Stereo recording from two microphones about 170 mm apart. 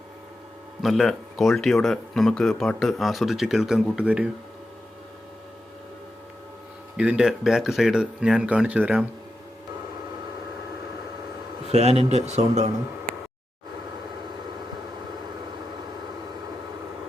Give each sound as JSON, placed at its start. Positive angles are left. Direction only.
{"t": 0.8, "sound": "speech", "side_deg": 0}
{"t": 6.9, "sound": "speech", "side_deg": -5}
{"t": 11.7, "sound": "a man's voice", "side_deg": -35}